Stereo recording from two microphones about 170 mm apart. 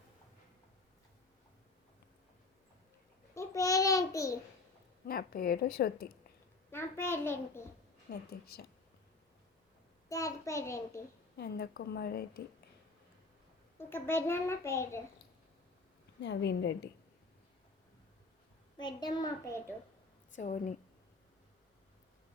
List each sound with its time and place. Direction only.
3.3 s babbling: 20° left (ahead or behind)
5.0 s a woman's voice: 60° left (ahead or behind)
6.7 s a child's voice: 15° left (ahead or behind)
8.1 s a woman's voice: 65° left (ahead or behind)
10.1 s a child's voice: 20° left (ahead or behind)
11.3 s a woman's voice: 70° left (ahead or behind)
13.7 s a child's voice: 15° left (ahead or behind)
16.2 s a woman's voice: 90° left
18.8 s a child's voice: 25° left (ahead or behind)
20.3 s a woman's voice: 45° left (ahead or behind)